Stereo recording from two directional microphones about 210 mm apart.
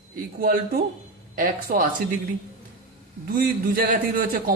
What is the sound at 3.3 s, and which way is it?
Speech, 40° right (ahead or behind).